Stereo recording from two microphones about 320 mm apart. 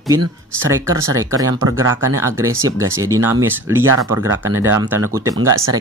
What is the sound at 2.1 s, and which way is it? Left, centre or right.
Speech, centre.